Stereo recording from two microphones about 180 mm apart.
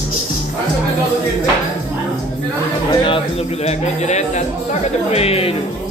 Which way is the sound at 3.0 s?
30° left (ahead or behind).